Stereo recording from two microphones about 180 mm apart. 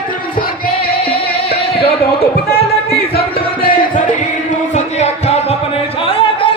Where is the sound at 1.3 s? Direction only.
35° left (ahead or behind).